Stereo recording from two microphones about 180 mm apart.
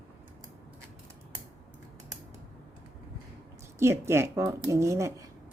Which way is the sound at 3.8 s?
15° right (ahead or behind).